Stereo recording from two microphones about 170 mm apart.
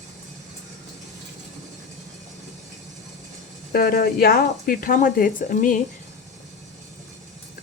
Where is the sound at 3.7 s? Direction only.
65° left (ahead or behind).